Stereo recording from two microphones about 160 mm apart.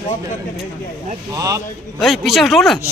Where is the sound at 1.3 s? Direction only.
20° right (ahead or behind).